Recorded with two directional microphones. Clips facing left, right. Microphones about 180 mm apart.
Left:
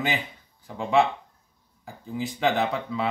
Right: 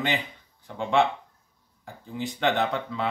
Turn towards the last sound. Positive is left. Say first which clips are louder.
# left 1 dB
turn(degrees=0)  # may be behind; listen again after turning